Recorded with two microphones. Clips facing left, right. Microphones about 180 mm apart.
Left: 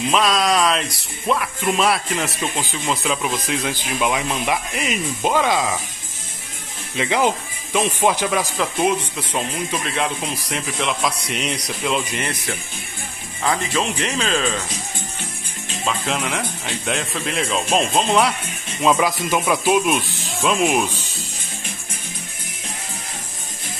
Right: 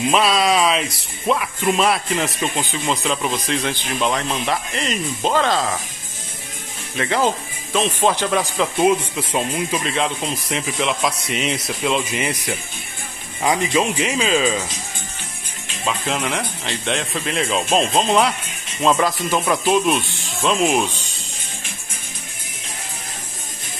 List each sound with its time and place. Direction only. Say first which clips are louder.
0.1 s speech: right 1 dB; 5° right (ahead or behind)
7.0 s speech: even; 15° left (ahead or behind)
8.4 s speech: right 2 dB; centre (ahead or behind)
15.8 s speech: right 1 dB; centre (ahead or behind)